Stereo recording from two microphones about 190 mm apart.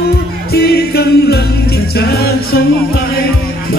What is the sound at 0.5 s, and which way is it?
Music, 55° left (ahead or behind).